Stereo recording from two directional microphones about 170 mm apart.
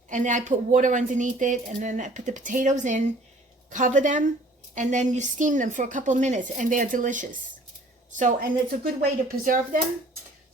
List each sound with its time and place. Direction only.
0.1 s speech: 45° right (ahead or behind)